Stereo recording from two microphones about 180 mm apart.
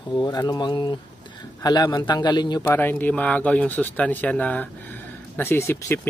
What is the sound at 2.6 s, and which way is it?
Speech, 10° left (ahead or behind).